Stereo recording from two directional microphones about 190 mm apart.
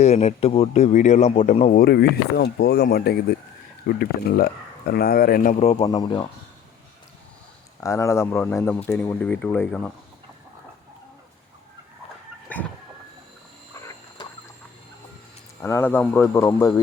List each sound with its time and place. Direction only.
0.0 s speech: 35° left (ahead or behind)
5.9 s speech: 20° left (ahead or behind)
7.8 s speech: 15° left (ahead or behind)
12.5 s a sound: 10° left (ahead or behind)
13.7 s wild animals: 15° left (ahead or behind)
15.6 s speech: 10° left (ahead or behind)